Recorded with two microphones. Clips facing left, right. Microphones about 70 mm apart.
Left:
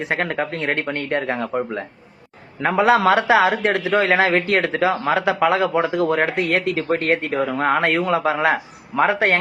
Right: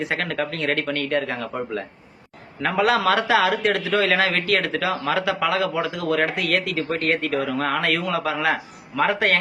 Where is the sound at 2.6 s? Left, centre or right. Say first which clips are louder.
Left 4 dB; left.